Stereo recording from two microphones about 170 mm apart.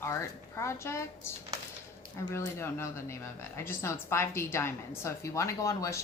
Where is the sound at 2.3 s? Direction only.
15° left (ahead or behind).